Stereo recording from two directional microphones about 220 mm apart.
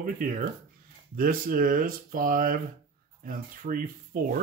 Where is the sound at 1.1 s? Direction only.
40° right (ahead or behind).